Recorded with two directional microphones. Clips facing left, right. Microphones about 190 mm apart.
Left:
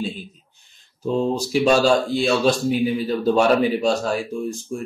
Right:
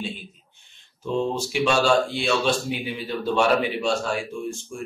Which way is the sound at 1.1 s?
40° left (ahead or behind).